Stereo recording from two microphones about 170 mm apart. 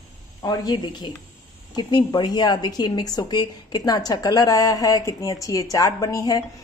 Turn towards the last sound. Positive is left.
turn(degrees=20)  # may be behind; listen again after turning